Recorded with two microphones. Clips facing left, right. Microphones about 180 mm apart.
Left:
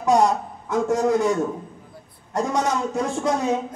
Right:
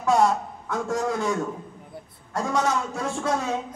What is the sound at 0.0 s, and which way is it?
A man's voice, 15° left (ahead or behind).